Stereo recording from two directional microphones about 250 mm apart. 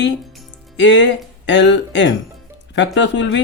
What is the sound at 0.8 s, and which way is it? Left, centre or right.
Speech, left.